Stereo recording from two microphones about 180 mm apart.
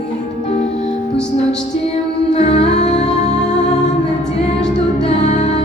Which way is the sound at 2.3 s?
35° left (ahead or behind).